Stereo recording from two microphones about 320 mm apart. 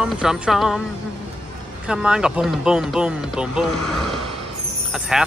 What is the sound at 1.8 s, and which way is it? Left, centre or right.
Music, centre.